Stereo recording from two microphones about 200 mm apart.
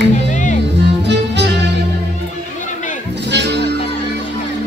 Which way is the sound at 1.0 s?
60° right (ahead or behind).